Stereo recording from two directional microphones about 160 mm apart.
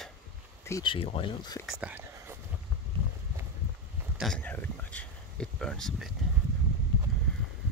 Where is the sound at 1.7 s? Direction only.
10° right (ahead or behind).